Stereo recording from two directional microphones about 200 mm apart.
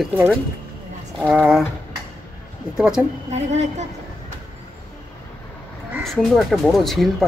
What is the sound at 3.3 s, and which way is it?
Speech, 35° right (ahead or behind).